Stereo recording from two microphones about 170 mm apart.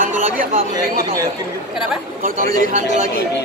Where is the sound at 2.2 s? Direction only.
55° right (ahead or behind).